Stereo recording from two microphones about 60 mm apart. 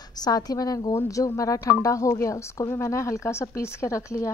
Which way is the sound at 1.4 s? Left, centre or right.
Left.